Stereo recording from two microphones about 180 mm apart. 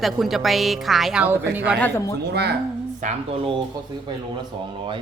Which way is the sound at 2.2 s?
65° right (ahead or behind).